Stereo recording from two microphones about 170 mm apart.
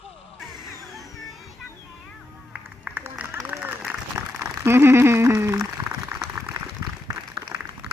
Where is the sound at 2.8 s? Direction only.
10° right (ahead or behind).